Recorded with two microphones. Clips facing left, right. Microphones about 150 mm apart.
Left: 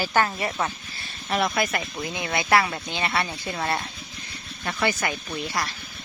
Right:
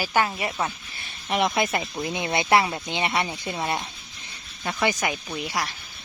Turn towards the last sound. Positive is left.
turn(degrees=-10)  # may be behind; listen again after turning